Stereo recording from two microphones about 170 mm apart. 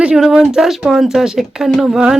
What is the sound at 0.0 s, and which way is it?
Speech, 5° right (ahead or behind).